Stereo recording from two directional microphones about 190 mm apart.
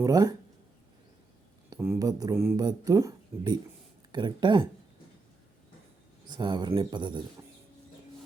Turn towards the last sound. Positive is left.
turn(degrees=-25)  # may be behind; listen again after turning